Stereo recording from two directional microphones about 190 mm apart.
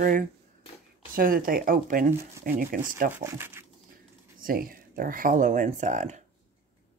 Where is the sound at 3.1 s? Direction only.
15° right (ahead or behind).